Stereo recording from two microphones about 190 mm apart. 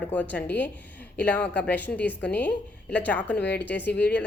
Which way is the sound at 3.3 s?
60° left (ahead or behind).